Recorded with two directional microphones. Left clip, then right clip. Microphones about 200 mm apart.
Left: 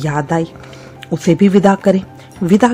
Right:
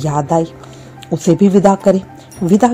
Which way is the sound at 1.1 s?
10° left (ahead or behind).